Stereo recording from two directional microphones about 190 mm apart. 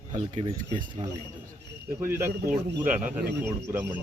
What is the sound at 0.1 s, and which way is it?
Speech, 25° right (ahead or behind).